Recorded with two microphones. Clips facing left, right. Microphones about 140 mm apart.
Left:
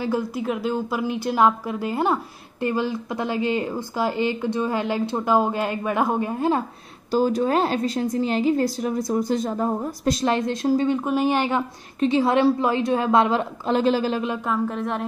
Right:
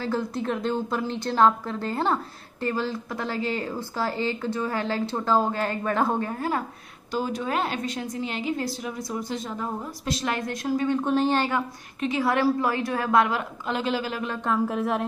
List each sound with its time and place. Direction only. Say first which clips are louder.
0.0 s speech: left 3 dB; 10° left (ahead or behind)
7.1 s a woman's voice: left 7 dB; 40° left (ahead or behind)
10.3 s a woman's voice: left 6 dB; 25° left (ahead or behind)
11.1 s speech: left 2 dB; 10° left (ahead or behind)
12.0 s a woman's voice: left 5 dB; 30° left (ahead or behind)
14.4 s speech: even; centre (ahead or behind)